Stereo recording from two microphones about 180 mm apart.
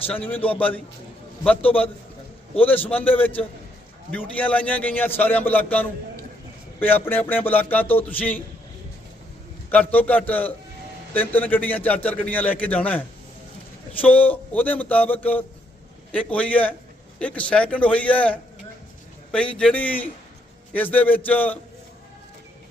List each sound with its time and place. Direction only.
0.1 s a man's voice: 10° left (ahead or behind)
2.6 s a man's voice: 10° left (ahead or behind)
6.7 s a man's voice: 10° left (ahead or behind)
9.7 s a man's voice: 10° left (ahead or behind)